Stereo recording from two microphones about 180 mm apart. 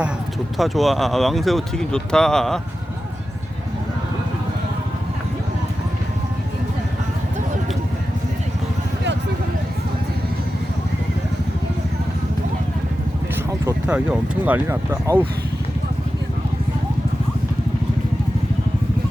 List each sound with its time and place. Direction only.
0.5 s speech: centre (ahead or behind)
13.7 s speech: 5° right (ahead or behind)